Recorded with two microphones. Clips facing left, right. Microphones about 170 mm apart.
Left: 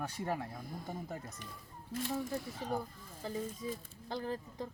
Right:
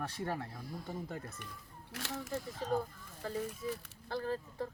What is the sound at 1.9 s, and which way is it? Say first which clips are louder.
Speech: left 6 dB; 80° right.